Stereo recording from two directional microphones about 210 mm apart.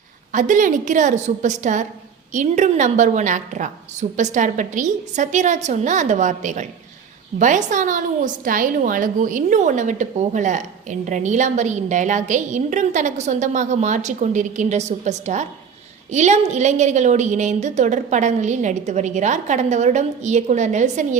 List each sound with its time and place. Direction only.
0.3 s a woman's voice: 40° right (ahead or behind)